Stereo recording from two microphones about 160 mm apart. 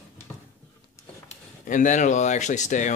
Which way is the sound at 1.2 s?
55° left (ahead or behind).